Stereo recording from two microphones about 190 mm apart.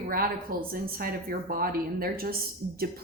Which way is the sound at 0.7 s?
50° right (ahead or behind).